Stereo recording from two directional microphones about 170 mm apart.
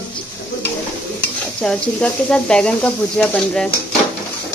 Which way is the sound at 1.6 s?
5° left (ahead or behind).